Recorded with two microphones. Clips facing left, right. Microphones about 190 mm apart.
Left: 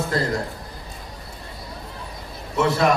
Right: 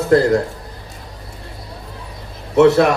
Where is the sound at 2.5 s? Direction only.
65° right (ahead or behind).